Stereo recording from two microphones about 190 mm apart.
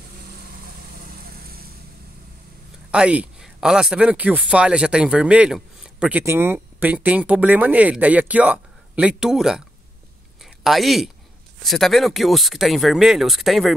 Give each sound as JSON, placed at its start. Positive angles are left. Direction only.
{"t": 0.9, "sound": "vehicle", "side_deg": -50}
{"t": 2.9, "sound": "speech", "side_deg": -5}